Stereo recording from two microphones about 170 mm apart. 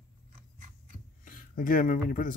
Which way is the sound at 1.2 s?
55° left (ahead or behind).